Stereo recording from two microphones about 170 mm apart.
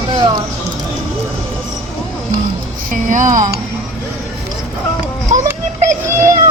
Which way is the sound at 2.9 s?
50° right (ahead or behind).